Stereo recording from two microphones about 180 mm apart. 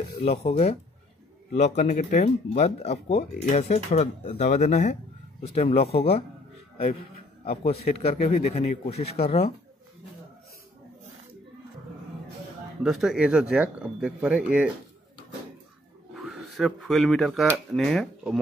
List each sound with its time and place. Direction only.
0.2 s speech: 35° left (ahead or behind)
7.4 s speech: 35° left (ahead or behind)
12.8 s speech: centre (ahead or behind)
16.2 s speech: centre (ahead or behind)